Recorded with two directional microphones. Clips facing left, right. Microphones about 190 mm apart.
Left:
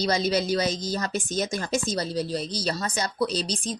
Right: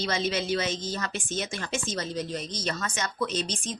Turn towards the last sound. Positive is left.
turn(degrees=35)  # may be behind; listen again after turning